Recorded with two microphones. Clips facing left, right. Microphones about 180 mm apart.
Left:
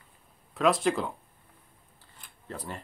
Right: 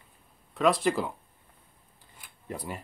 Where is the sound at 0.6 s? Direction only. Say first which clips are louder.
Even; centre (ahead or behind).